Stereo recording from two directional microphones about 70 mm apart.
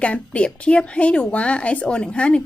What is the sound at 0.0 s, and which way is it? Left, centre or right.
Speech, centre.